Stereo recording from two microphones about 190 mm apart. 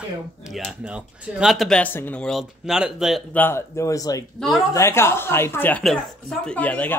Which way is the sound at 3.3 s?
10° left (ahead or behind).